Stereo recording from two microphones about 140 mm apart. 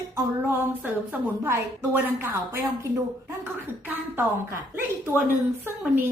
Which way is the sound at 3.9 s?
15° right (ahead or behind).